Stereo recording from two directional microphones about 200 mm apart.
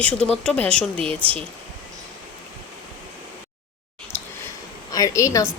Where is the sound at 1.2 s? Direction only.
30° right (ahead or behind).